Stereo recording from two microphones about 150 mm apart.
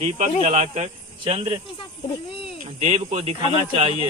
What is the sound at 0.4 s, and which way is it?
Speech, 45° right (ahead or behind).